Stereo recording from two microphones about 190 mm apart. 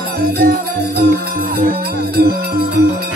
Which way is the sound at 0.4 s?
55° right (ahead or behind).